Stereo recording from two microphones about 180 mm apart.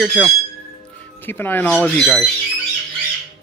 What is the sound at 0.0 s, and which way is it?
Speech, centre (ahead or behind).